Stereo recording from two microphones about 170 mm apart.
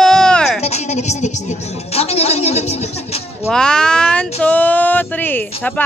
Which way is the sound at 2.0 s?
40° left (ahead or behind).